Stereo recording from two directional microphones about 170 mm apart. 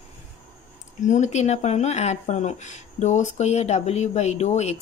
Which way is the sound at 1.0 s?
45° left (ahead or behind).